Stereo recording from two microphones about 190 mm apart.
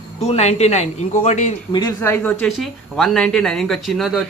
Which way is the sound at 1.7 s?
15° left (ahead or behind).